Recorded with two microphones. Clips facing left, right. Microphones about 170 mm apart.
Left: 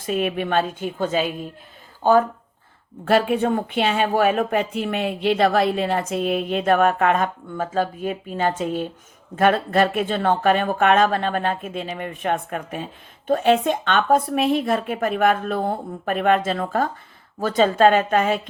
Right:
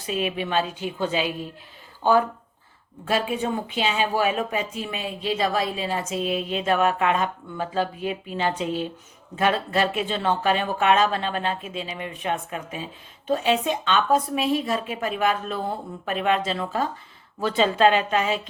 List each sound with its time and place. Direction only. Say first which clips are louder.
0.0 s speech: left 4 dB; 50° left (ahead or behind)
3.0 s speech: left 6 dB; 60° left (ahead or behind)